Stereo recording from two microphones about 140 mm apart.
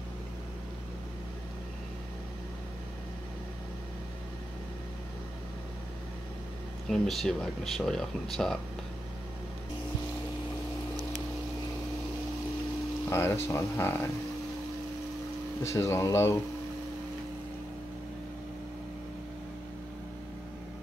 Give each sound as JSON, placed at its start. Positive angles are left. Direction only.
{"t": 6.9, "sound": "speech", "side_deg": 0}
{"t": 13.1, "sound": "speech", "side_deg": 20}
{"t": 15.6, "sound": "speech", "side_deg": 20}